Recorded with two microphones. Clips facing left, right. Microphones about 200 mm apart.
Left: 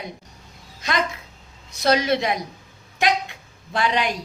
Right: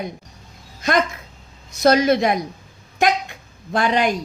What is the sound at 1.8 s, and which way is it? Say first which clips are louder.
Speech: right 5 dB; 45° right (ahead or behind).